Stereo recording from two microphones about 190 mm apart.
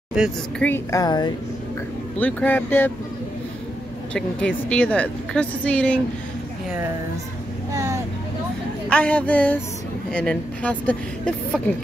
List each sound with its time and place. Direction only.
0.6 s a woman's voice: 10° left (ahead or behind)
2.1 s a woman's voice: 10° left (ahead or behind)
4.1 s a woman's voice: 5° left (ahead or behind)
7.7 s vehicle: 15° right (ahead or behind)
8.8 s a woman's voice: 5° left (ahead or behind)